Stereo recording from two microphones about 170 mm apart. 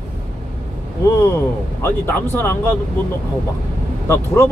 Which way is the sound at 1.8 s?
15° left (ahead or behind).